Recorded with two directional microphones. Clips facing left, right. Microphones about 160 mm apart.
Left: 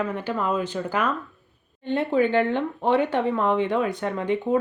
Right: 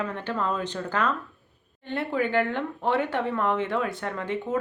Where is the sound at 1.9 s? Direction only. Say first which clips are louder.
Left 5 dB; 20° left (ahead or behind).